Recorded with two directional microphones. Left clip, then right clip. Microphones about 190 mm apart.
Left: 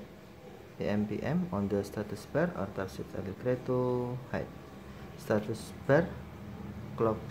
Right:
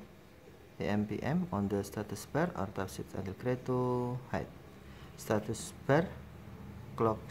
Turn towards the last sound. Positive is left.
turn(degrees=-20)  # may be behind; listen again after turning